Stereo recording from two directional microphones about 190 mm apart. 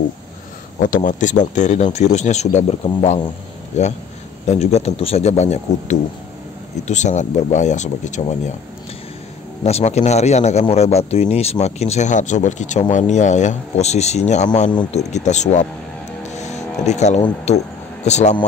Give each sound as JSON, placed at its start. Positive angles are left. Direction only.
{"t": 0.7, "sound": "speech", "side_deg": 45}
{"t": 9.6, "sound": "speech", "side_deg": 35}
{"t": 16.3, "sound": "a sound", "side_deg": 35}
{"t": 17.5, "sound": "speech", "side_deg": 35}